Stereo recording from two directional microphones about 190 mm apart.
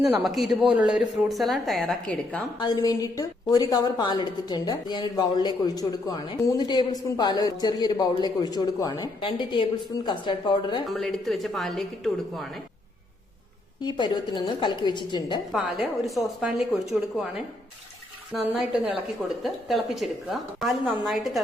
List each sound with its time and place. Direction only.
0.0 s a woman's voice: centre (ahead or behind)
2.6 s a woman's voice: 20° left (ahead or behind)
10.8 s a woman's voice: centre (ahead or behind)
13.8 s a woman's voice: 25° left (ahead or behind)
15.5 s a woman's voice: centre (ahead or behind)
18.3 s a woman's voice: centre (ahead or behind)